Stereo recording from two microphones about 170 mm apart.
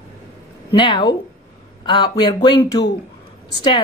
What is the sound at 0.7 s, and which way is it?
Speech, 30° left (ahead or behind).